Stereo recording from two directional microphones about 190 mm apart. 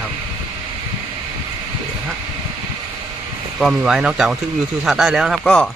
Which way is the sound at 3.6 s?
5° right (ahead or behind).